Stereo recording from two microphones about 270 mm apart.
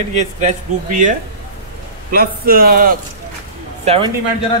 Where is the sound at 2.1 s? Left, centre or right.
Right.